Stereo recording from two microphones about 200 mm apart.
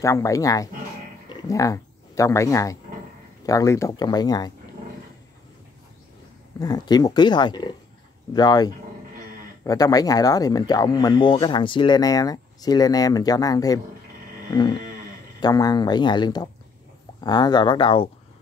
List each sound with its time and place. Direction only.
0.0 s speech: 15° left (ahead or behind)
6.6 s speech: 20° left (ahead or behind)